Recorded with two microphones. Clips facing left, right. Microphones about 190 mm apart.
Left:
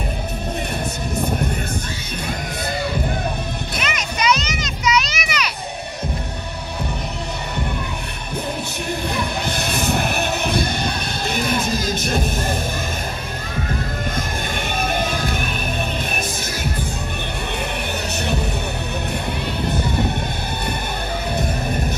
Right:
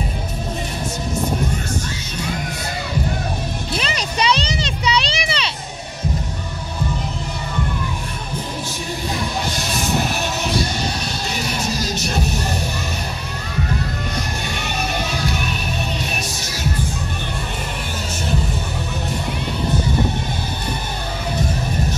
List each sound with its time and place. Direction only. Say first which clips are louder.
3.7 s a sound: right 4 dB; 30° right (ahead or behind)
9.1 s music: even; 60° left (ahead or behind)
15.0 s music: left 1 dB; 50° left (ahead or behind)